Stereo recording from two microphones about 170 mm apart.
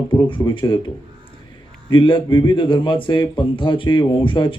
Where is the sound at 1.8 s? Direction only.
30° left (ahead or behind).